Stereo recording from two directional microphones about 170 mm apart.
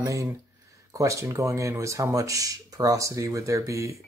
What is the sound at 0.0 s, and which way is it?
Speech, 20° right (ahead or behind).